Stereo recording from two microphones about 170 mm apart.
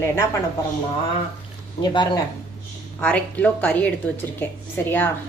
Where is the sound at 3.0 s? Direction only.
10° left (ahead or behind).